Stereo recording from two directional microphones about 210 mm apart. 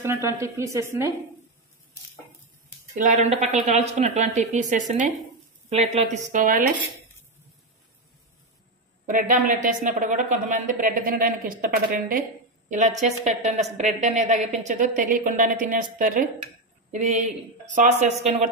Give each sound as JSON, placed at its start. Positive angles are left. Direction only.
{"t": 0.0, "sound": "a woman's voice", "side_deg": -15}
{"t": 2.9, "sound": "speech", "side_deg": -35}
{"t": 9.0, "sound": "speech", "side_deg": -40}